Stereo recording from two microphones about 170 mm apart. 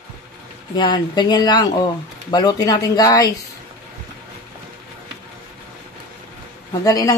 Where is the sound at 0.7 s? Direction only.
25° left (ahead or behind).